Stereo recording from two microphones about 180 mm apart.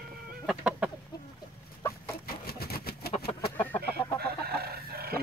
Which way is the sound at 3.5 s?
10° left (ahead or behind).